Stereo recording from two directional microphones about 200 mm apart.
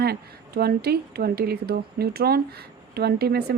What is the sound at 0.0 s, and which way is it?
Speech, 50° right (ahead or behind).